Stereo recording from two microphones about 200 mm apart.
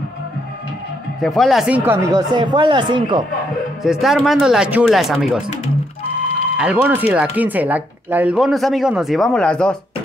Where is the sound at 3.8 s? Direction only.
Centre (ahead or behind).